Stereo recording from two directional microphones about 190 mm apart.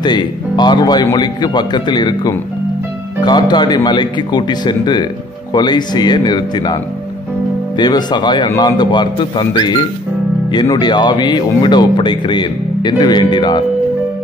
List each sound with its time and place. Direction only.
0.0 s speech: 25° left (ahead or behind)